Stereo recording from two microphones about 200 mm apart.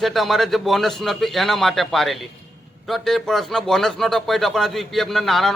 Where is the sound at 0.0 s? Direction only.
Centre (ahead or behind).